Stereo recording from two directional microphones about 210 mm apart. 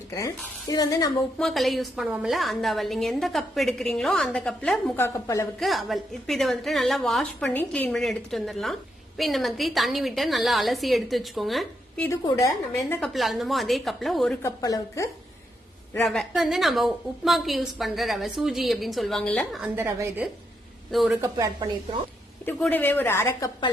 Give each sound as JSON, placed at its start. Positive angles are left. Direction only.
{"t": 0.1, "sound": "a woman's voice", "side_deg": 15}
{"t": 1.4, "sound": "a woman's voice", "side_deg": 0}
{"t": 5.5, "sound": "a woman's voice", "side_deg": 0}
{"t": 12.0, "sound": "a woman's voice", "side_deg": 15}
{"t": 13.0, "sound": "a woman's voice", "side_deg": 0}
{"t": 14.4, "sound": "a woman's voice", "side_deg": 15}
{"t": 16.0, "sound": "a woman's voice", "side_deg": 0}
{"t": 20.9, "sound": "a woman's voice", "side_deg": 0}
{"t": 21.2, "sound": "speech", "side_deg": -15}
{"t": 22.4, "sound": "a woman's voice", "side_deg": 10}